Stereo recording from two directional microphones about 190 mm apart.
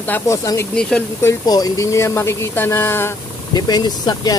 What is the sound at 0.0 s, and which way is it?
Speech, 10° left (ahead or behind).